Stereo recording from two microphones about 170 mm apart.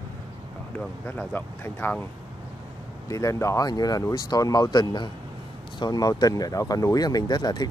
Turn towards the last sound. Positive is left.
turn(degrees=25)  # may be behind; listen again after turning